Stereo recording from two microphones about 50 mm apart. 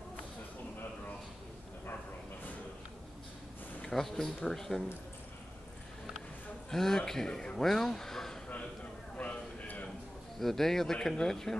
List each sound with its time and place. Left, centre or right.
3.9 s a man's voice: centre
6.7 s a man's voice: centre
9.1 s a sound: left
10.4 s a man's voice: centre